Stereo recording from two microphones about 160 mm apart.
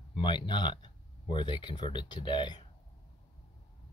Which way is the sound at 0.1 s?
30° left (ahead or behind).